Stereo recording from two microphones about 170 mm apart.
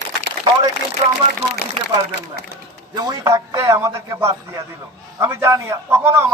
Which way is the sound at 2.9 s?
25° right (ahead or behind).